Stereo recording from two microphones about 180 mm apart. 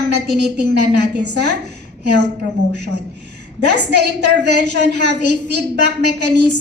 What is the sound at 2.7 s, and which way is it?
A woman's voice, 70° right (ahead or behind).